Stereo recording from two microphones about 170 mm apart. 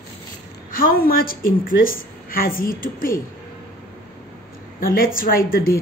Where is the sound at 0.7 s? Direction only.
55° left (ahead or behind).